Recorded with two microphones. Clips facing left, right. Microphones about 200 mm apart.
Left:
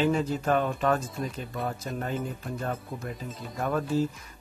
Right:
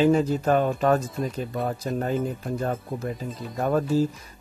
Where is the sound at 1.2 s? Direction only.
Centre (ahead or behind).